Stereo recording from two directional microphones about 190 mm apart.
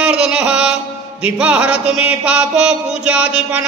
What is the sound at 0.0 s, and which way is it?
Mantra, 5° right (ahead or behind).